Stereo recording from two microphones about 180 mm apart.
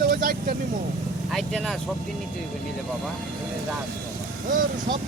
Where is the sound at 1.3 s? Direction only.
Centre (ahead or behind).